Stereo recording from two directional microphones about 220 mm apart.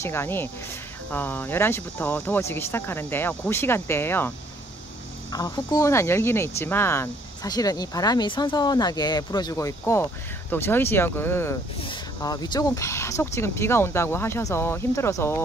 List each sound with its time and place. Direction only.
0.0 s speech: 10° left (ahead or behind)
5.3 s speech: 15° left (ahead or behind)